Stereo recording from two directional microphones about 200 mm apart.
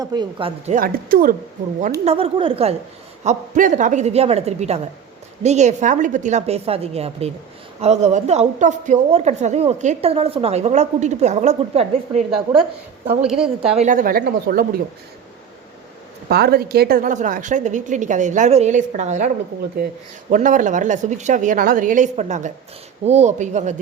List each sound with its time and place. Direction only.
0.0 s speech: 20° right (ahead or behind)
0.8 s a woman's voice: 45° right (ahead or behind)
2.0 s a woman's voice: 30° right (ahead or behind)
13.2 s speech: 5° right (ahead or behind)
13.7 s a woman's voice: 40° right (ahead or behind)
16.3 s a woman's voice: 50° right (ahead or behind)
20.3 s a woman's voice: 40° right (ahead or behind)